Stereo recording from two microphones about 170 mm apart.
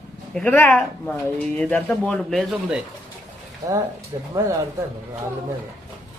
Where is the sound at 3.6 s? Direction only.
20° right (ahead or behind).